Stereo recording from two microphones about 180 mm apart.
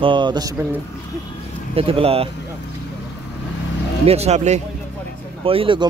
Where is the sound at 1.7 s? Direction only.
30° right (ahead or behind).